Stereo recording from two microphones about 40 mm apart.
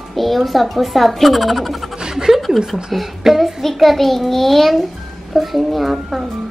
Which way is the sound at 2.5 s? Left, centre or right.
Centre.